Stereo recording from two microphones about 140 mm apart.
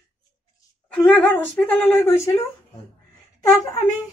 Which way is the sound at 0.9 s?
5° left (ahead or behind).